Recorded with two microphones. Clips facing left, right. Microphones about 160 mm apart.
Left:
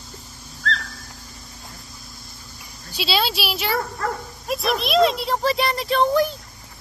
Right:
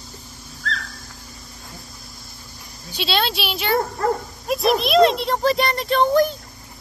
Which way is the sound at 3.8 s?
30° right (ahead or behind).